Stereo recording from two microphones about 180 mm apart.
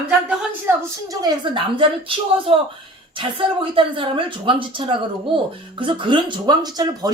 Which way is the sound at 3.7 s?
30° right (ahead or behind).